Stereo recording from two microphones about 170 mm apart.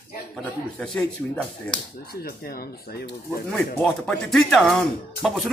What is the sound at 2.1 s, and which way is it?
Speech, 60° left (ahead or behind).